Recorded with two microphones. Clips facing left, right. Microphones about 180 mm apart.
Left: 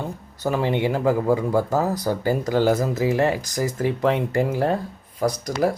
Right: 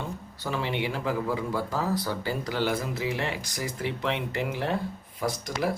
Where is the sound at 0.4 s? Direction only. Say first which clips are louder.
Left 8 dB; 45° left (ahead or behind).